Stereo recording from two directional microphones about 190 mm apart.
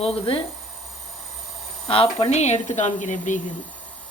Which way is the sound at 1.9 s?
30° left (ahead or behind).